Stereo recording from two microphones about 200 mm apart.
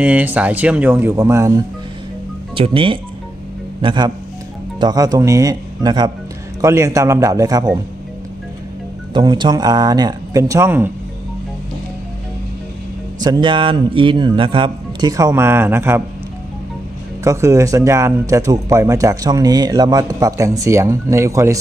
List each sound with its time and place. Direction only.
0.0 s speech: 10° right (ahead or behind)
2.5 s speech: 25° right (ahead or behind)
9.1 s speech: 20° right (ahead or behind)
13.2 s speech: 20° right (ahead or behind)
17.2 s speech: 15° right (ahead or behind)